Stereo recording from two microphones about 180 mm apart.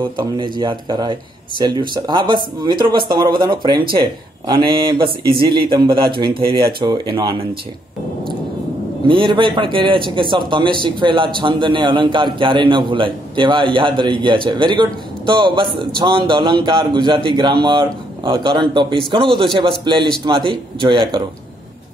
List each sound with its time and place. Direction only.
0.0 s a man's voice: 25° right (ahead or behind)
9.0 s a man's voice: 25° right (ahead or behind)